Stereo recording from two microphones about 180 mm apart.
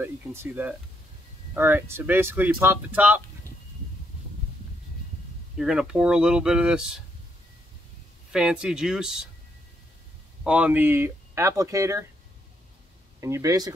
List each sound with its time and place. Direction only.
0.0 s speech: 15° right (ahead or behind)
5.6 s speech: 5° right (ahead or behind)
8.3 s speech: 5° right (ahead or behind)
10.4 s speech: 5° right (ahead or behind)
13.2 s speech: 15° right (ahead or behind)